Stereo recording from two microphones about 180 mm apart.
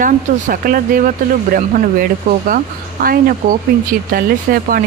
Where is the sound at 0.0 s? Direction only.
50° right (ahead or behind).